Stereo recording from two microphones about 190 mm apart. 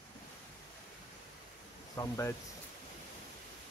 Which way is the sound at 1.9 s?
15° left (ahead or behind).